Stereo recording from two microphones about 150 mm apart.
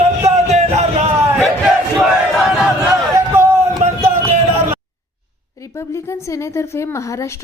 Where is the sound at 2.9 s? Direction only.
20° right (ahead or behind).